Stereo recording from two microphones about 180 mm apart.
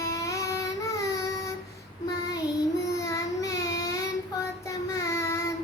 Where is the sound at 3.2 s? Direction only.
20° left (ahead or behind).